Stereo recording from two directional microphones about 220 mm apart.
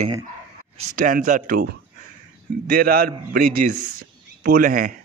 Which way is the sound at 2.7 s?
40° right (ahead or behind).